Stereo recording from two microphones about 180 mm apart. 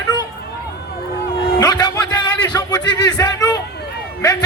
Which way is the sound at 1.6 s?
20° left (ahead or behind).